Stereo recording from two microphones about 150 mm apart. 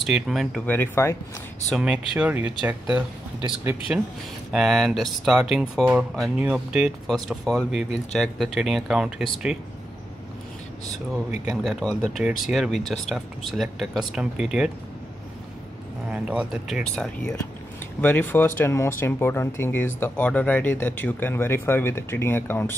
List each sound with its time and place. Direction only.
0.0 s speech: centre (ahead or behind)
0.7 s speech: 15° left (ahead or behind)
1.8 s speech: 5° right (ahead or behind)
11.4 s speech: centre (ahead or behind)
16.1 s speech: 5° right (ahead or behind); by 22.8 s 15° left (ahead or behind)